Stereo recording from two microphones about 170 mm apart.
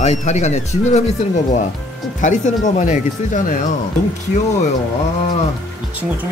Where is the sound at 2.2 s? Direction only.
45° left (ahead or behind).